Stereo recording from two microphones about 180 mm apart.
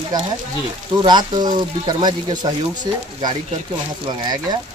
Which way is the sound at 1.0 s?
25° right (ahead or behind).